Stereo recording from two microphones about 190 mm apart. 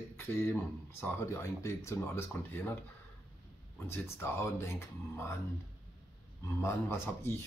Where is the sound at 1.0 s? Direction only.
15° left (ahead or behind).